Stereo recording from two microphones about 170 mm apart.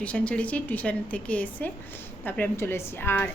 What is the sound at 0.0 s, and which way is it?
A woman's voice, 5° left (ahead or behind).